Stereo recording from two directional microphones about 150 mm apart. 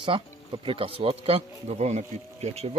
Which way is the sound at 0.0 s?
35° right (ahead or behind).